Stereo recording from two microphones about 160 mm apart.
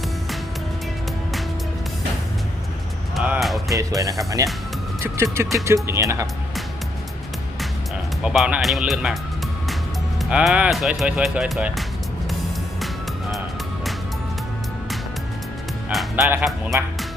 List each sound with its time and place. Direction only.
3.2 s music: 5° right (ahead or behind)
3.8 s speech: 20° right (ahead or behind)
8.2 s speech: 5° right (ahead or behind)
10.2 s speech: 5° right (ahead or behind)
15.9 s music: centre (ahead or behind)
16.4 s speech: centre (ahead or behind)